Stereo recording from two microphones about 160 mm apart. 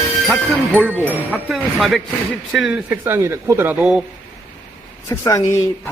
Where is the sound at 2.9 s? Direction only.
15° right (ahead or behind).